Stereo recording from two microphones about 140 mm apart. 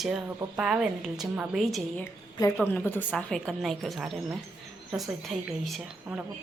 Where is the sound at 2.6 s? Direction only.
15° left (ahead or behind).